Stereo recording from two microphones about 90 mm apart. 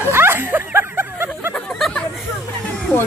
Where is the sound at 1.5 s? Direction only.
10° left (ahead or behind).